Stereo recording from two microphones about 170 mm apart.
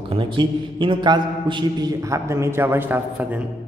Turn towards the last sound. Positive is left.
turn(degrees=-10)  # may be behind; listen again after turning